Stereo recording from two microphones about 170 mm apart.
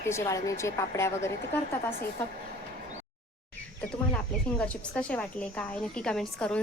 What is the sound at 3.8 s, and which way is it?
A woman's voice, 5° left (ahead or behind).